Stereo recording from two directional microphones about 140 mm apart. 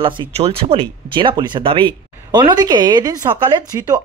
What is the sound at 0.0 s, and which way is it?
Speech, 40° right (ahead or behind).